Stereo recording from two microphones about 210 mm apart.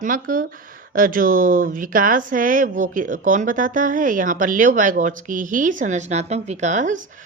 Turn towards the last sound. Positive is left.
turn(degrees=-35)  # may be behind; listen again after turning